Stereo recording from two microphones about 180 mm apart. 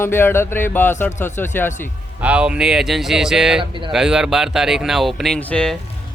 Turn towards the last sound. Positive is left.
turn(degrees=5)  # may be behind; listen again after turning